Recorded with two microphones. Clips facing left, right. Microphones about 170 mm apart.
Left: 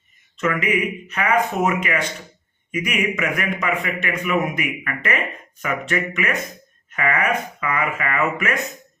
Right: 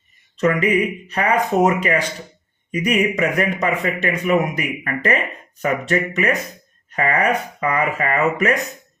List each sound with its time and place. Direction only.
0.3 s a man's voice: 35° right (ahead or behind)